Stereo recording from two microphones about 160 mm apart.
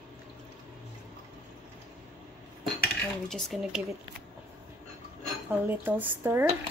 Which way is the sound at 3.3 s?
Centre (ahead or behind).